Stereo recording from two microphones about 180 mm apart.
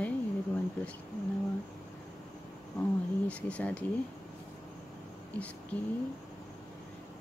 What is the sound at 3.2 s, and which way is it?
Speech, 5° left (ahead or behind).